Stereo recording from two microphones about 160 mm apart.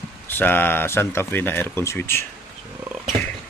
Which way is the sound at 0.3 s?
10° left (ahead or behind).